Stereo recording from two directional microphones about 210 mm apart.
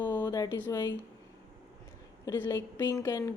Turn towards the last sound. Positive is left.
turn(degrees=15)  # may be behind; listen again after turning